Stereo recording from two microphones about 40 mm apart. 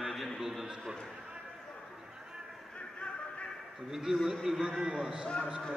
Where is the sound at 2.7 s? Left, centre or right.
Left.